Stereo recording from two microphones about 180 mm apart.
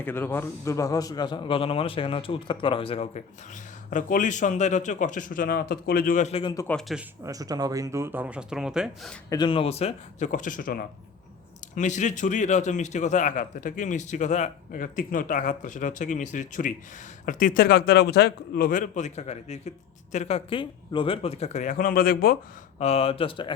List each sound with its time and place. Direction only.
0.0 s a man's voice: 10° left (ahead or behind); by 3.2 s 35° left (ahead or behind)
3.8 s a man's voice: 45° left (ahead or behind)
6.7 s speech: centre (ahead or behind)
7.3 s speech: 20° right (ahead or behind); by 9.1 s 5° right (ahead or behind)
9.3 s a man's voice: 25° left (ahead or behind); by 22.4 s 55° left (ahead or behind)
22.8 s speech: 35° left (ahead or behind)